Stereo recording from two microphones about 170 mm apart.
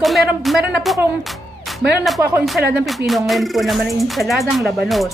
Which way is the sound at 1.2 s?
Centre (ahead or behind).